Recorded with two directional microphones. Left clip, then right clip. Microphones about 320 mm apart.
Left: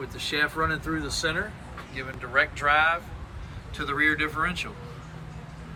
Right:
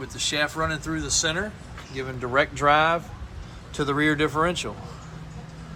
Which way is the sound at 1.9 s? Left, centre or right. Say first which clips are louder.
Right 2 dB; centre.